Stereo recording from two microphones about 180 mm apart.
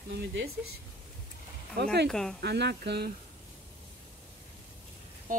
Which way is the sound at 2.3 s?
70° right (ahead or behind).